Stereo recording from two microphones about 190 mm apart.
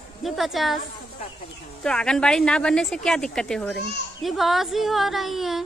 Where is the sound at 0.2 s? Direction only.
Centre (ahead or behind).